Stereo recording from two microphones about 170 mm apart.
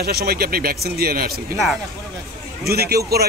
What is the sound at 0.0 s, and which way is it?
A man's voice, 65° right (ahead or behind).